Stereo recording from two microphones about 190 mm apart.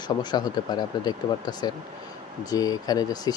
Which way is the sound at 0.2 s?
20° left (ahead or behind).